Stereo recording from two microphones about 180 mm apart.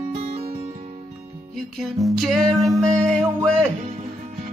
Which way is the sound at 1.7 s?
Centre (ahead or behind).